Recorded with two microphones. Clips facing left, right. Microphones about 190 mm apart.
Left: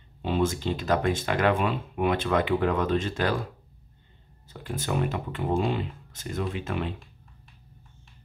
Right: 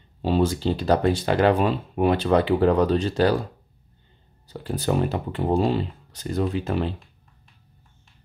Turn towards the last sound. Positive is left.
turn(degrees=-35)  # may be behind; listen again after turning